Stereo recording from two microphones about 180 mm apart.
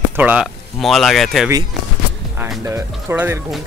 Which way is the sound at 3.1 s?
10° right (ahead or behind).